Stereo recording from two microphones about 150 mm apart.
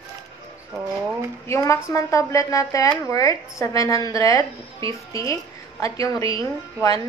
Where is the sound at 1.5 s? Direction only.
20° left (ahead or behind).